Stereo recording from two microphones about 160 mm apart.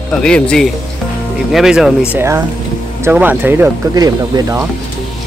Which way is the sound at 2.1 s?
15° right (ahead or behind).